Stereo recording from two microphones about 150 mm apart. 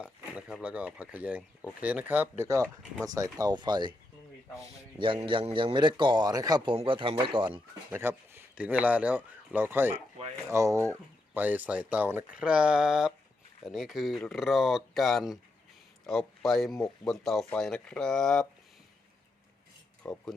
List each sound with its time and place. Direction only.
0.0 s speech: 5° right (ahead or behind); by 6.7 s 25° right (ahead or behind)
6.7 s speech: 35° right (ahead or behind)
7.9 s speech: 15° right (ahead or behind)
9.9 s speech: 40° right (ahead or behind)
10.5 s speech: 20° right (ahead or behind); by 18.4 s 5° left (ahead or behind)
20.0 s speech: 10° left (ahead or behind)